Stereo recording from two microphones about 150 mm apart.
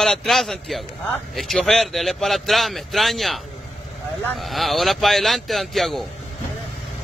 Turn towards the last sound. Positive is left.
turn(degrees=0)  # may be behind; listen again after turning